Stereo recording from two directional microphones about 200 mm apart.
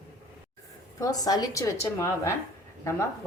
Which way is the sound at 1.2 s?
20° left (ahead or behind).